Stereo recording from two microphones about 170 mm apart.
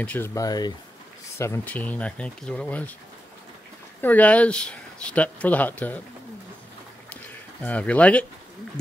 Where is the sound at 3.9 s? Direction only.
10° left (ahead or behind).